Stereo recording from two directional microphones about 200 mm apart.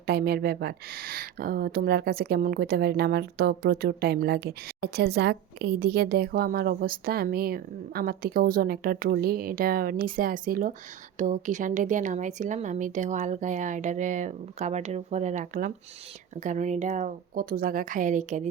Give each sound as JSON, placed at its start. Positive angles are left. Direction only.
{"t": 0.0, "sound": "speech", "side_deg": -50}